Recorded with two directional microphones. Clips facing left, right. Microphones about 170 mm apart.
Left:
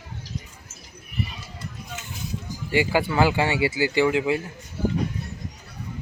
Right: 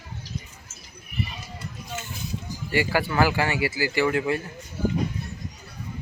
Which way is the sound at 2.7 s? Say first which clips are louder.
Left 2 dB; 20° left (ahead or behind).